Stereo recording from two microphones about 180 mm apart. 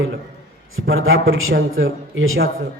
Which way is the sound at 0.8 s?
90° right.